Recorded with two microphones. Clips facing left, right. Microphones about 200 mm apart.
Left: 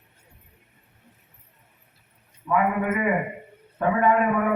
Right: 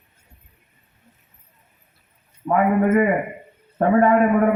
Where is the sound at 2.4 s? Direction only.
45° right (ahead or behind).